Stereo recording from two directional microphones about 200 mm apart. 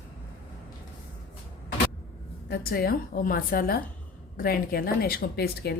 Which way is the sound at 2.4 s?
55° left (ahead or behind).